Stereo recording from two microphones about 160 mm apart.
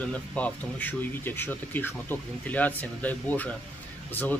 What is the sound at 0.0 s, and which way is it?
Speech, 10° left (ahead or behind).